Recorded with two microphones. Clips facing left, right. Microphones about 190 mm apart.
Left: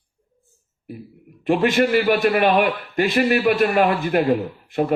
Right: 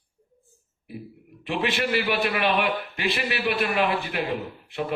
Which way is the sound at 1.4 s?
45° left (ahead or behind).